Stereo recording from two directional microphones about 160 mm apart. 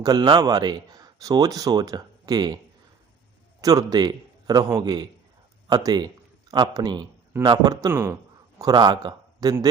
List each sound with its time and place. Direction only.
0.0 s speech: 25° right (ahead or behind)
3.6 s a man's voice: 25° right (ahead or behind)